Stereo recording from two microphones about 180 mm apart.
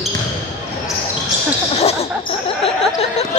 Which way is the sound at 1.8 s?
35° left (ahead or behind).